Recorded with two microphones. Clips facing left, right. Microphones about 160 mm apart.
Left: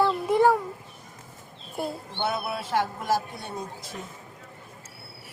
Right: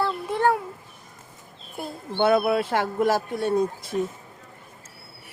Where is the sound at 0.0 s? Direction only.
10° left (ahead or behind).